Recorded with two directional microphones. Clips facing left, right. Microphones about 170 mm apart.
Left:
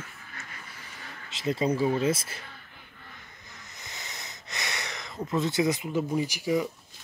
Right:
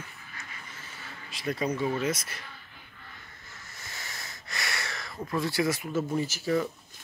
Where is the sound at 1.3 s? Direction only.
25° left (ahead or behind).